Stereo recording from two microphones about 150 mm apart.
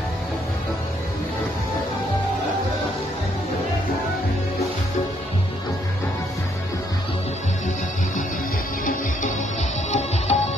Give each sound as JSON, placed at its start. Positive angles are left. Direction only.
{"t": 9.8, "sound": "music", "side_deg": 45}